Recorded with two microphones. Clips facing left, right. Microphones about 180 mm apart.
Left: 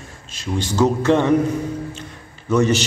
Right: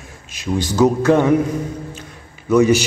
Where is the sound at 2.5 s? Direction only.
15° right (ahead or behind).